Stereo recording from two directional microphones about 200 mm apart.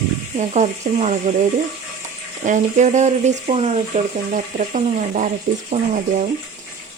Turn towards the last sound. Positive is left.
turn(degrees=-35)  # may be behind; listen again after turning